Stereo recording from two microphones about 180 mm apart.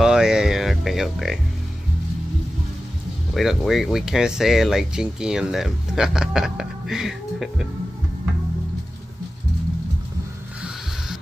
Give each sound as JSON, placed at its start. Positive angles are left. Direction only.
{"t": 0.0, "sound": "music", "side_deg": -5}
{"t": 3.3, "sound": "speech", "side_deg": 0}